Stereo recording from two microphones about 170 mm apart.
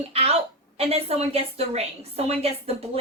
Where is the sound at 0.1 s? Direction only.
35° right (ahead or behind).